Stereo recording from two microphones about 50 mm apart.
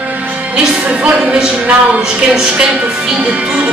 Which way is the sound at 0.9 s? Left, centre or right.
Right.